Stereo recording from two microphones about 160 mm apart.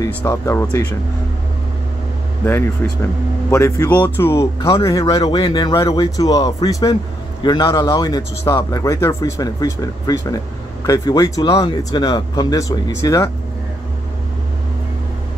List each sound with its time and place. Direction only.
0.0 s speech: 20° left (ahead or behind)
2.4 s speech: 15° left (ahead or behind)